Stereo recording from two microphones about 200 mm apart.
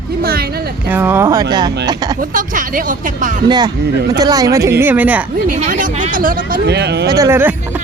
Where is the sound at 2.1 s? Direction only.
40° right (ahead or behind).